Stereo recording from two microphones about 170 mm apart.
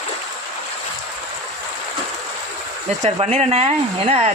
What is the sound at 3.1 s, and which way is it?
Speech, 35° right (ahead or behind).